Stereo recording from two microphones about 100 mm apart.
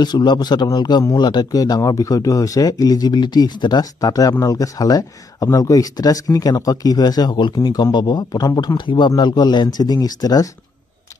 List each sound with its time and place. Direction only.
0.0 s speech: 45° left (ahead or behind)